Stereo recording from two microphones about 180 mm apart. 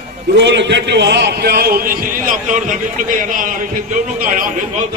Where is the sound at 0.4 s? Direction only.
75° right (ahead or behind); by 4.6 s 45° right (ahead or behind).